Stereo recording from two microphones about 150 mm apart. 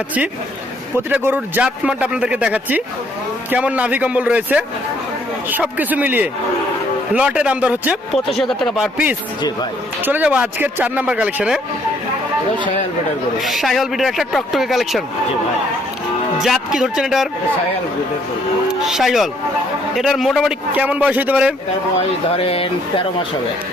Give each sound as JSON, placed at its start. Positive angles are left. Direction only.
{"t": 0.9, "sound": "speech", "side_deg": -15}
{"t": 8.1, "sound": "speech", "side_deg": 0}
{"t": 10.0, "sound": "speech", "side_deg": -10}
{"t": 13.4, "sound": "speech", "side_deg": 0}
{"t": 16.4, "sound": "speech", "side_deg": -5}
{"t": 18.7, "sound": "speech", "side_deg": -5}
{"t": 22.4, "sound": "speech", "side_deg": 40}